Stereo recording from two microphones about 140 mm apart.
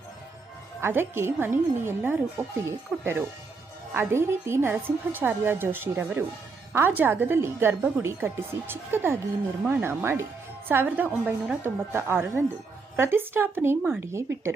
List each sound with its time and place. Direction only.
0.8 s a woman's voice: 15° right (ahead or behind)